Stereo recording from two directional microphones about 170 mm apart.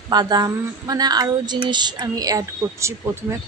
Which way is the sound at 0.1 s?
25° right (ahead or behind).